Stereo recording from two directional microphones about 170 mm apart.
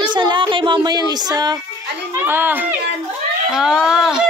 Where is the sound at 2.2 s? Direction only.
10° right (ahead or behind).